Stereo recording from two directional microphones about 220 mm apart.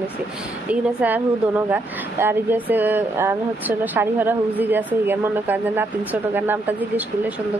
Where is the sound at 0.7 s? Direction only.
5° right (ahead or behind).